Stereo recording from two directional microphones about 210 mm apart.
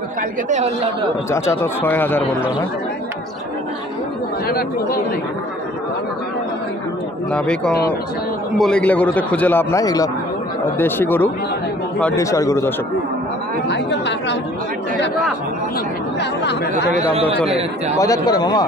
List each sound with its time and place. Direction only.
0.5 s a man's voice: 35° right (ahead or behind)
1.3 s a man's voice: 15° left (ahead or behind)
4.5 s speech: 45° left (ahead or behind)
7.2 s a man's voice: 5° left (ahead or behind)
13.7 s speech: 55° left (ahead or behind)
16.2 s speech: 55° left (ahead or behind)
16.9 s speech: 30° right (ahead or behind)
17.9 s speech: 15° left (ahead or behind)